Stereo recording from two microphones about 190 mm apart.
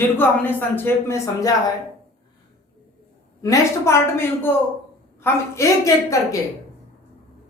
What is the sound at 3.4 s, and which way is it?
A man's voice, 15° left (ahead or behind).